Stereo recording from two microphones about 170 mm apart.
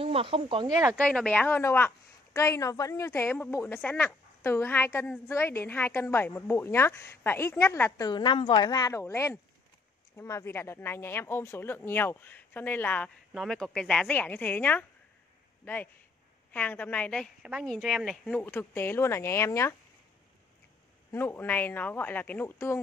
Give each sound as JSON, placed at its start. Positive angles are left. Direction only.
{"t": 0.0, "sound": "speech", "side_deg": -35}
{"t": 0.8, "sound": "a woman's voice", "side_deg": 5}
{"t": 8.1, "sound": "a woman's voice", "side_deg": 25}
{"t": 17.4, "sound": "a woman's voice", "side_deg": -5}
{"t": 21.1, "sound": "a woman's voice", "side_deg": 10}